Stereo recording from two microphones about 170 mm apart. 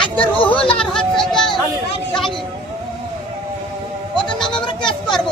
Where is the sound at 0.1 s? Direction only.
10° left (ahead or behind).